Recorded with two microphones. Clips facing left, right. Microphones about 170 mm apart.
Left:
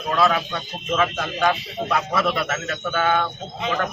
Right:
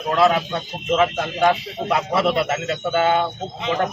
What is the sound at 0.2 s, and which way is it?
Speech, 20° right (ahead or behind).